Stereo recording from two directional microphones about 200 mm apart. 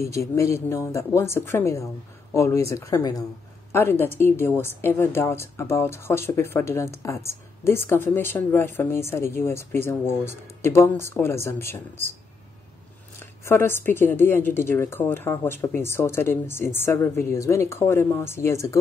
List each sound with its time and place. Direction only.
0.0 s speech: 15° left (ahead or behind)
13.4 s speech: 10° left (ahead or behind)